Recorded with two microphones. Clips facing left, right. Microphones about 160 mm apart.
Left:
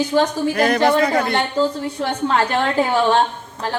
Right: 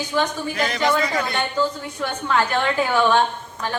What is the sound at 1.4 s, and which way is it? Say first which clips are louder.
A woman's voice: left 4 dB; 30° left (ahead or behind).